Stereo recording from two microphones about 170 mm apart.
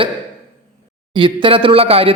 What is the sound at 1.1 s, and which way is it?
Speech, 30° right (ahead or behind).